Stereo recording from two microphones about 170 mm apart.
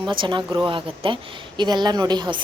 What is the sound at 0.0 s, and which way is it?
A woman's voice, 30° right (ahead or behind).